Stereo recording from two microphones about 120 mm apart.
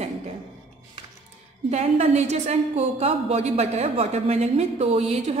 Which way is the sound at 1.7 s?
65° right (ahead or behind).